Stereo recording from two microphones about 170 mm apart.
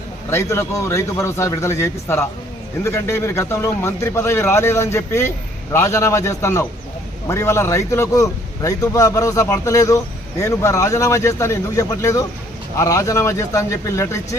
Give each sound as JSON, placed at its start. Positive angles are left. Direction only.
{"t": 0.3, "sound": "a man's voice", "side_deg": 15}